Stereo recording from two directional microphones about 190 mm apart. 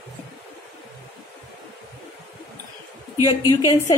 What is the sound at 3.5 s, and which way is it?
Speech, 15° right (ahead or behind).